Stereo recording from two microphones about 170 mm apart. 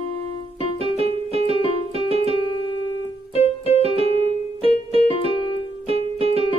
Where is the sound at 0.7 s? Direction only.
35° right (ahead or behind).